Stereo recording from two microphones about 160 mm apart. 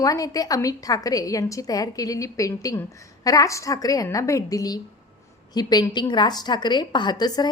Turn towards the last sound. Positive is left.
turn(degrees=25)  # may be behind; listen again after turning